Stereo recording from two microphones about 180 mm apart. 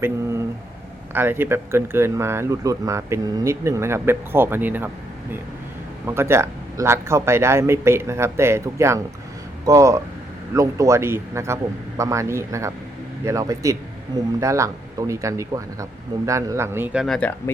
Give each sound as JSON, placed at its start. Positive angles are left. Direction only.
{"t": 0.0, "sound": "speech", "side_deg": -15}
{"t": 6.1, "sound": "speech", "side_deg": -15}